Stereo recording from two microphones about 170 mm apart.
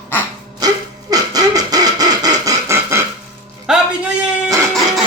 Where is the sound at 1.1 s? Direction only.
20° right (ahead or behind).